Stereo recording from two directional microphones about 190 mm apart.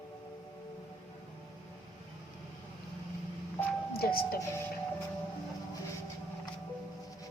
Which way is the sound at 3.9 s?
50° left (ahead or behind).